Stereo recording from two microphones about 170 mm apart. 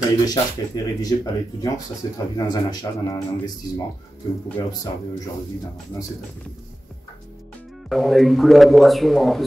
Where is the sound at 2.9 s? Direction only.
25° left (ahead or behind).